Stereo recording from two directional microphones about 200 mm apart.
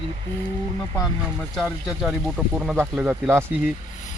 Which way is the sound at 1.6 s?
Centre (ahead or behind).